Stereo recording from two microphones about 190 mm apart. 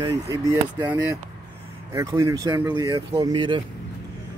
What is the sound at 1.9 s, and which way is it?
Speech, 15° right (ahead or behind).